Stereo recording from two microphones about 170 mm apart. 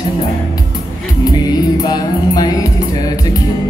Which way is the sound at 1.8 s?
25° left (ahead or behind).